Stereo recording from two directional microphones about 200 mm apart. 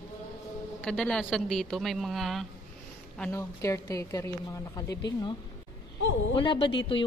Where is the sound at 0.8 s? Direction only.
5° left (ahead or behind).